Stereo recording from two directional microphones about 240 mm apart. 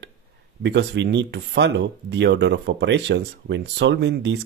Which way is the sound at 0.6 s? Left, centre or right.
Right.